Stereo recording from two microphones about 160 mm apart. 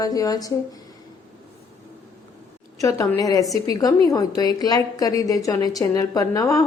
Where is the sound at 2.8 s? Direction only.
20° left (ahead or behind).